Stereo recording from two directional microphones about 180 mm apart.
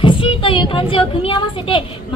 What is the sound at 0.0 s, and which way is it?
A woman's voice, 30° left (ahead or behind).